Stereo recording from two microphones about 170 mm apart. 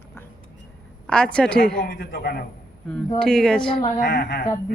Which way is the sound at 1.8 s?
80° left.